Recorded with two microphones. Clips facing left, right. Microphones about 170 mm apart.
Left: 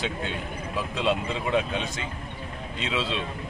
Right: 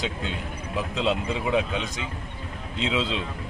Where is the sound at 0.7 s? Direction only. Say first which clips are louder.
Right 1 dB; 15° right (ahead or behind).